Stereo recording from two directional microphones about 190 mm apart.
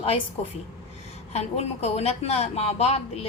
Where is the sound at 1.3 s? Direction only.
35° left (ahead or behind).